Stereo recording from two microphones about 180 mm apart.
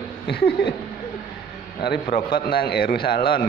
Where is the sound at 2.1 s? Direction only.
55° left (ahead or behind).